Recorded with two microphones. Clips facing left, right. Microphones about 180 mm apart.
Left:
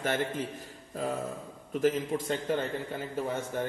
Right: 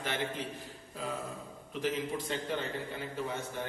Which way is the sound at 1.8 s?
45° left (ahead or behind).